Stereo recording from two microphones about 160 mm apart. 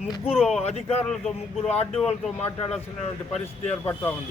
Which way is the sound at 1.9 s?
Centre (ahead or behind).